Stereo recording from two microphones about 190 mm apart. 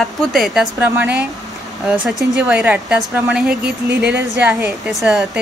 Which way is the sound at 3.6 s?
60° right (ahead or behind).